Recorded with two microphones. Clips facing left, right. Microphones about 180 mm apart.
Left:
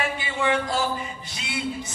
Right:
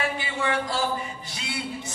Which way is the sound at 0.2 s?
20° left (ahead or behind).